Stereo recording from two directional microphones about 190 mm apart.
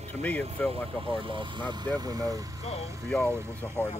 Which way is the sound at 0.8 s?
30° right (ahead or behind).